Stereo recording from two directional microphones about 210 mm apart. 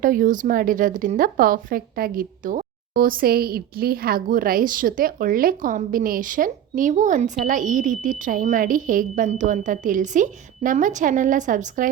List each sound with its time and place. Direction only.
0.0 s speech: 40° right (ahead or behind)